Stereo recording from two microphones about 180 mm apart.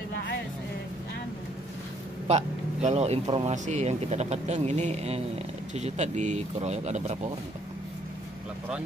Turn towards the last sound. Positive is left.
turn(degrees=-40)  # may be behind; listen again after turning